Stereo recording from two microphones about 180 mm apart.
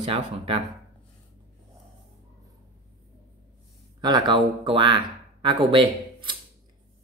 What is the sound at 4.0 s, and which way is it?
Speech, 25° right (ahead or behind).